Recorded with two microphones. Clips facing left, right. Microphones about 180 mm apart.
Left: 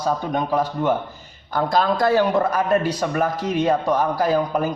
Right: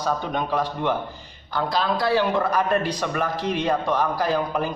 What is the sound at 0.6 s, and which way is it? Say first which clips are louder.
A man's voice: left 3 dB; 45° left (ahead or behind).